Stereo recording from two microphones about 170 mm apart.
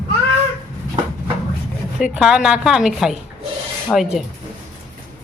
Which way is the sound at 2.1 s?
5° right (ahead or behind).